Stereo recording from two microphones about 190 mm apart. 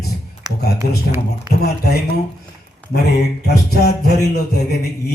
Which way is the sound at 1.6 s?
55° left (ahead or behind).